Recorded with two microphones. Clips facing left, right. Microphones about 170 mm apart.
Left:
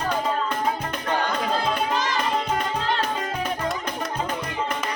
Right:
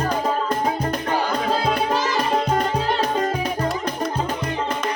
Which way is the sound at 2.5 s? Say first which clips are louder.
Right 4 dB; 40° right (ahead or behind).